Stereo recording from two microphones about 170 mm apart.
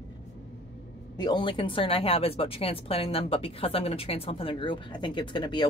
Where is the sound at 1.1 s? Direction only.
25° left (ahead or behind).